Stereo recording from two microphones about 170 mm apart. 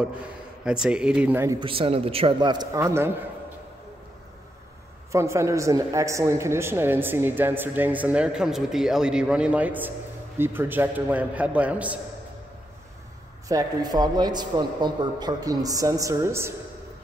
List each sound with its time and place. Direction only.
0.7 s speech: 5° right (ahead or behind)
1.6 s a man's voice: 35° right (ahead or behind); by 3.1 s 15° right (ahead or behind)
5.1 s a woman's voice: 15° right (ahead or behind)
13.5 s a man's voice: 20° right (ahead or behind)